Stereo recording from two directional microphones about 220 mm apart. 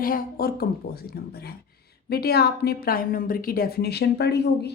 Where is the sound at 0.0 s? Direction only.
40° left (ahead or behind).